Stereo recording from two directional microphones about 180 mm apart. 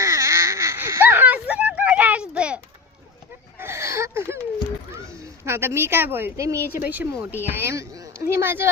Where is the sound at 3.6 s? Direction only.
15° right (ahead or behind).